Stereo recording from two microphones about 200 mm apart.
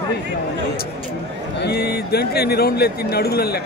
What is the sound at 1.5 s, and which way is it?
Speech, 55° left (ahead or behind).